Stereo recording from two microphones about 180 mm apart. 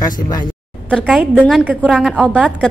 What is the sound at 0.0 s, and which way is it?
Speech, 20° left (ahead or behind).